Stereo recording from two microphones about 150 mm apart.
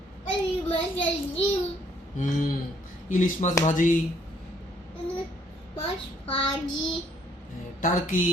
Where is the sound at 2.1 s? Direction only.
55° left (ahead or behind).